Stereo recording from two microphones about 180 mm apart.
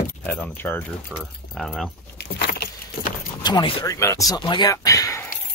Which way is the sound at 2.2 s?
60° left (ahead or behind).